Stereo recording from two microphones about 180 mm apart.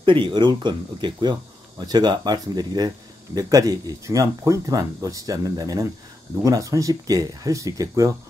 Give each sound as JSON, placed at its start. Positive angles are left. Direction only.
{"t": 0.0, "sound": "speech", "side_deg": -30}